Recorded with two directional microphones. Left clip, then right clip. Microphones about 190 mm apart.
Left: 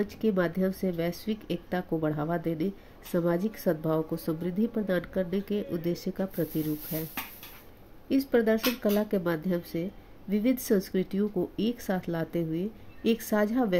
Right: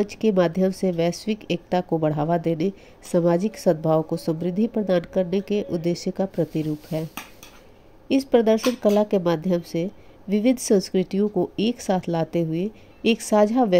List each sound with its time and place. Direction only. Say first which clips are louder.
0.0 s a woman's voice: right 8 dB; 30° right (ahead or behind)
8.1 s a woman's voice: right 7 dB; 30° right (ahead or behind)